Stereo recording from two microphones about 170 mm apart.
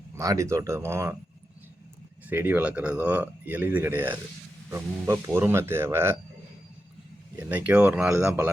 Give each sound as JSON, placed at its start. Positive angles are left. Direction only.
{"t": 0.2, "sound": "speech", "side_deg": -20}
{"t": 2.3, "sound": "speech", "side_deg": -10}
{"t": 7.3, "sound": "speech", "side_deg": -10}